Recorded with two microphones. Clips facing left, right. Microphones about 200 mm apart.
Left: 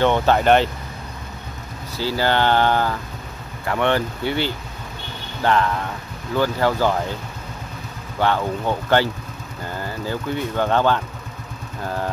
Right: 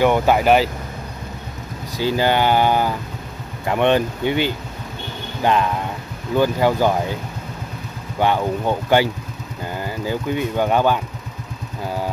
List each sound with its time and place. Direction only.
0.0 s speech: 10° right (ahead or behind)
2.0 s speech: 15° right (ahead or behind)
8.2 s speech: 15° right (ahead or behind)